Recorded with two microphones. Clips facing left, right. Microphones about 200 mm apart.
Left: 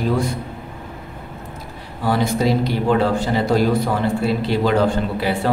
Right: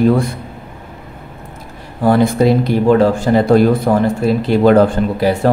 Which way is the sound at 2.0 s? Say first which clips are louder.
Right 7 dB; 55° right (ahead or behind).